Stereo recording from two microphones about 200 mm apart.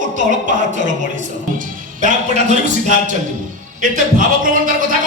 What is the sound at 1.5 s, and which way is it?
Music, 40° right (ahead or behind).